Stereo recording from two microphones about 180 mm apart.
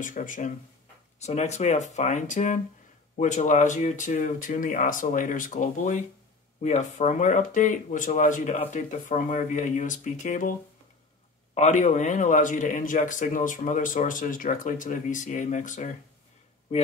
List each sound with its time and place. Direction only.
0.0 s a man's voice: 45° left (ahead or behind)
11.5 s a man's voice: 40° left (ahead or behind)